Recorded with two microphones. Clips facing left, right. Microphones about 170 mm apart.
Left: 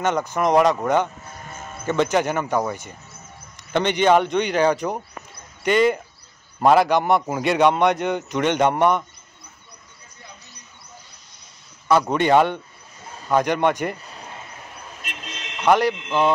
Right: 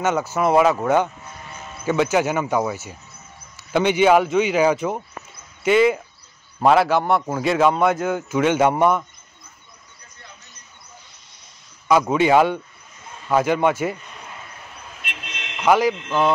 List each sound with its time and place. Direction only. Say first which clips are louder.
0.0 s speech: right 1 dB; 5° right (ahead or behind)
1.4 s sheep: left 2 dB; 45° left (ahead or behind)
1.9 s a man's voice: right 1 dB; 10° right (ahead or behind)
12.1 s a man's voice: right 2 dB; 5° right (ahead or behind)
15.0 s vehicle: right 2 dB; 40° left (ahead or behind)
15.6 s speech: right 1 dB; 5° right (ahead or behind)